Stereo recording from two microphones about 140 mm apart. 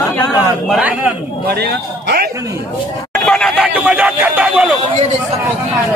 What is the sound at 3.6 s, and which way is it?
A man's voice, 10° right (ahead or behind).